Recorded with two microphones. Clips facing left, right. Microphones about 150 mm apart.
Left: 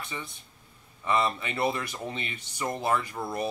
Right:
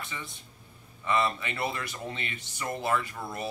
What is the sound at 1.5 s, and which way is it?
Speech, 25° left (ahead or behind).